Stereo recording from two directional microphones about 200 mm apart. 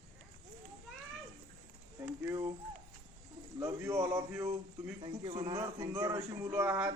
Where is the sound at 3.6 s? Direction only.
15° right (ahead or behind).